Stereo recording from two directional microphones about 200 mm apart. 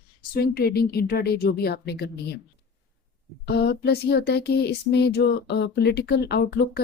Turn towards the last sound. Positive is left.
turn(degrees=55)  # may be behind; listen again after turning